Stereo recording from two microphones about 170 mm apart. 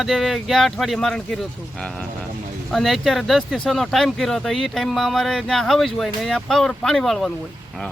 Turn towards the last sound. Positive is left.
turn(degrees=0)  # may be behind; listen again after turning